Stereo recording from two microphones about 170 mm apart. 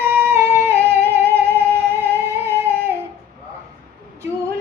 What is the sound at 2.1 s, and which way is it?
Female singing, 15° right (ahead or behind).